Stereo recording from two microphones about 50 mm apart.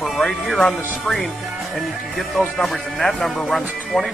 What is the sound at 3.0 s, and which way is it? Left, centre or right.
Speech, centre.